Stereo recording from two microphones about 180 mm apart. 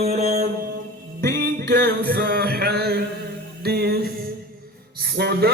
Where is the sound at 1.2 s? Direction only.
60° right (ahead or behind).